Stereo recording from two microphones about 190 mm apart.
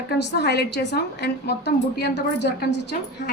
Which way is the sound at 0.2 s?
60° left (ahead or behind).